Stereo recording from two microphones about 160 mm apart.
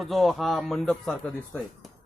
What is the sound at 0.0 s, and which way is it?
Speech, centre (ahead or behind).